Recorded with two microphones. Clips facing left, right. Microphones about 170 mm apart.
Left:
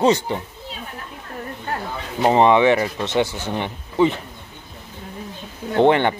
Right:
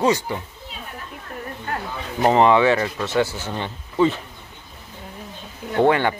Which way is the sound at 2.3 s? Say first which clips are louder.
Left 1 dB; 20° left (ahead or behind).